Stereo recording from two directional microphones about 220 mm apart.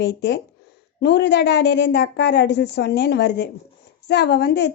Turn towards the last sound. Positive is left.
turn(degrees=50)  # may be behind; listen again after turning